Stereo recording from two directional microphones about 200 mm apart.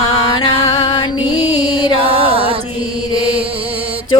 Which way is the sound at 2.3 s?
25° right (ahead or behind).